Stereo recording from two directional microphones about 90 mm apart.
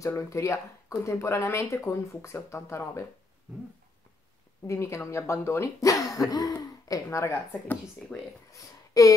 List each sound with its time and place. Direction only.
0.1 s speech: 35° left (ahead or behind)
4.6 s speech: 30° left (ahead or behind)
7.6 s speech: 20° left (ahead or behind)
8.5 s a sound: 40° left (ahead or behind)